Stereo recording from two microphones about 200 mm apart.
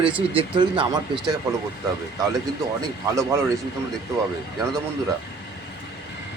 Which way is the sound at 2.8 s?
15° right (ahead or behind).